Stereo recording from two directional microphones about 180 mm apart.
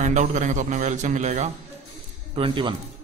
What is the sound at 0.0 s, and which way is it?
A man's voice, 40° right (ahead or behind).